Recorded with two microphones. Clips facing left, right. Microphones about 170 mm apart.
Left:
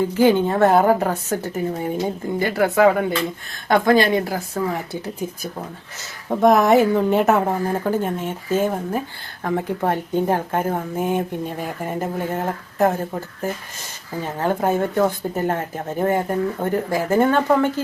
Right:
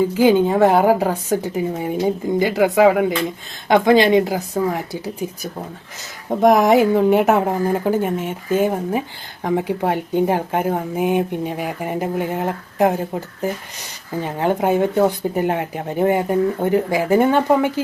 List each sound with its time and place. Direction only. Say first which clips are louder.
0.2 s a woman's voice: right 1 dB; 15° right (ahead or behind)
6.3 s a woman's voice: right 1 dB; 10° right (ahead or behind)